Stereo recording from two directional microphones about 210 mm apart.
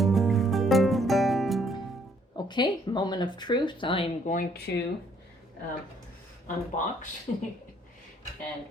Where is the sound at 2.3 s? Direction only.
20° left (ahead or behind).